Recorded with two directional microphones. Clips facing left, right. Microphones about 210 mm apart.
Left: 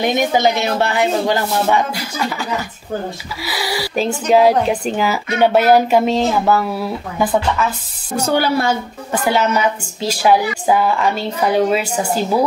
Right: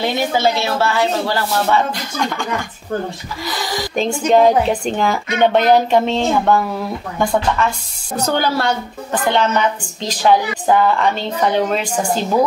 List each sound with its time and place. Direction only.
0.0 s a woman's voice: 15° left (ahead or behind)